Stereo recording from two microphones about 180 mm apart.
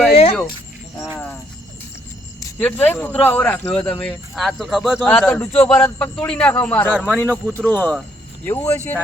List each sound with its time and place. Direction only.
0.1 s a sound: 35° left (ahead or behind)
2.6 s speech: 5° left (ahead or behind)
6.9 s speech: 10° right (ahead or behind)
7.5 s speech: 10° left (ahead or behind)